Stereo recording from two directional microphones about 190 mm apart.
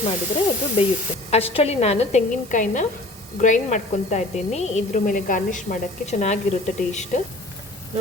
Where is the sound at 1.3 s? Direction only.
30° left (ahead or behind).